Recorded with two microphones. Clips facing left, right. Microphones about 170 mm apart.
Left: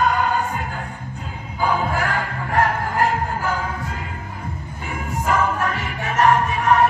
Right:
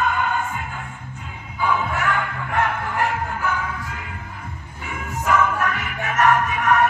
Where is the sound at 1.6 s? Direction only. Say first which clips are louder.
Left 1 dB; 35° left (ahead or behind).